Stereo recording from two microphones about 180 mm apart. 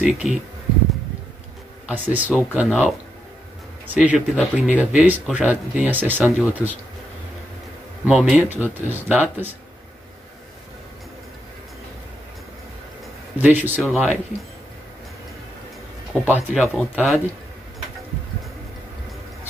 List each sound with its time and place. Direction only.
0.0 s speech: centre (ahead or behind)
1.9 s speech: 10° right (ahead or behind)
8.0 s speech: 5° right (ahead or behind)
13.4 s speech: 10° right (ahead or behind)
16.1 s speech: 5° left (ahead or behind)